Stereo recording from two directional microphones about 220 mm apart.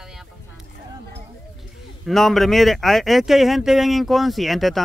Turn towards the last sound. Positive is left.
turn(degrees=0)  # may be behind; listen again after turning